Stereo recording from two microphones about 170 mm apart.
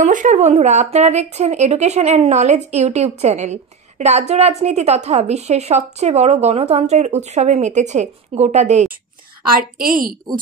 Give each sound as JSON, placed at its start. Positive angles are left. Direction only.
{"t": 0.0, "sound": "a woman's voice", "side_deg": -45}
{"t": 9.8, "sound": "a woman's voice", "side_deg": -55}